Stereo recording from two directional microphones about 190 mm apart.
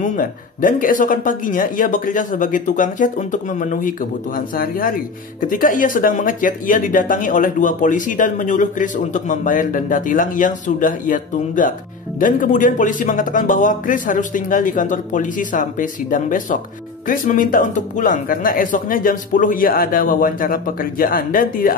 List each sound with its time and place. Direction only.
0.0 s speech: 45° left (ahead or behind)